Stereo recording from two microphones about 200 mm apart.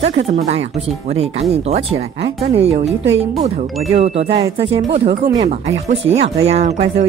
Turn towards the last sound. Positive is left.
turn(degrees=-35)  # may be behind; listen again after turning